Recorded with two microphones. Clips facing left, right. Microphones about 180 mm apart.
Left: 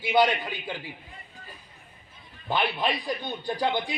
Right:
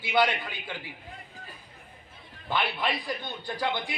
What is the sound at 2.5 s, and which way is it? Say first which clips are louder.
A man's voice: left 2 dB; 20° left (ahead or behind).